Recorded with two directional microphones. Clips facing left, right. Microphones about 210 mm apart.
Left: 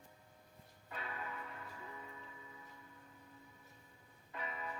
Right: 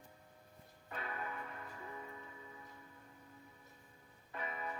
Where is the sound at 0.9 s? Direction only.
50° right (ahead or behind).